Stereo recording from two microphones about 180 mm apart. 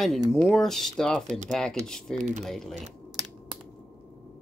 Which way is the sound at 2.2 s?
45° right (ahead or behind).